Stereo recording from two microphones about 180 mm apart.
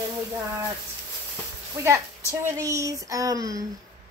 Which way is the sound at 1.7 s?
15° right (ahead or behind).